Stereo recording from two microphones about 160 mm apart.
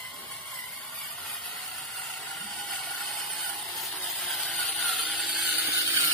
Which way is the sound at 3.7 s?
Centre (ahead or behind).